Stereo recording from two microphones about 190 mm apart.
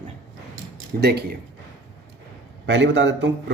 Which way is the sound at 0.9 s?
50° right (ahead or behind).